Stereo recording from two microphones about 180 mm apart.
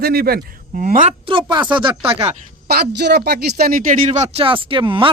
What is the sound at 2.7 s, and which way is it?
Speech, 65° right (ahead or behind).